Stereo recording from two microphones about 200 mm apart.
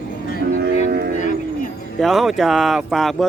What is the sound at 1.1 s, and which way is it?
Cattle, 40° left (ahead or behind).